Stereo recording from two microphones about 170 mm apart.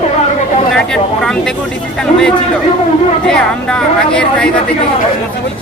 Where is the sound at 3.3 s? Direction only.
5° left (ahead or behind).